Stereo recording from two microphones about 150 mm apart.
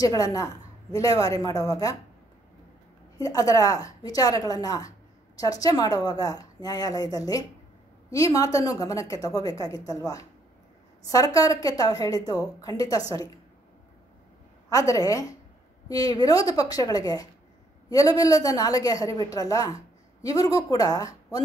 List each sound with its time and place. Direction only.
0.0 s a woman's voice: 25° left (ahead or behind)
3.2 s a woman's voice: 20° left (ahead or behind)
14.7 s a woman's voice: 20° left (ahead or behind)